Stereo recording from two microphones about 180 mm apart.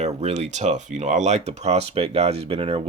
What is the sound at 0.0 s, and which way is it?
Speech, 35° right (ahead or behind).